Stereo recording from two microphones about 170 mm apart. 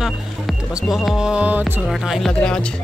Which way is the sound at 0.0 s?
Centre (ahead or behind).